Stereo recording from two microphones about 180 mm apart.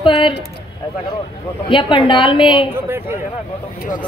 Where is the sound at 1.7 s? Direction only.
25° left (ahead or behind).